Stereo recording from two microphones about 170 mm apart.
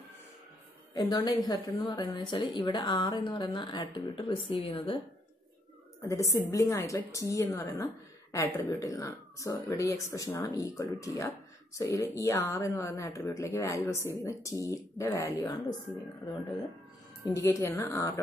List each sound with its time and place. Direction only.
0.9 s a woman's voice: 25° left (ahead or behind)
6.0 s a woman's voice: 20° left (ahead or behind)
17.3 s speech: 20° left (ahead or behind)